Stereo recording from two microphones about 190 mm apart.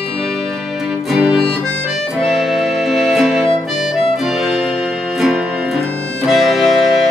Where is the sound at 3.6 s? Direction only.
Centre (ahead or behind).